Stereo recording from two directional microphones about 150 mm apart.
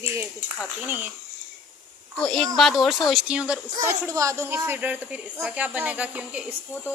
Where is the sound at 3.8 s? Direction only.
20° right (ahead or behind).